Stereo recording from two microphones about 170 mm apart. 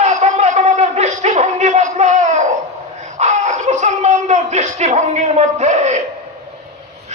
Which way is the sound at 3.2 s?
45° right (ahead or behind).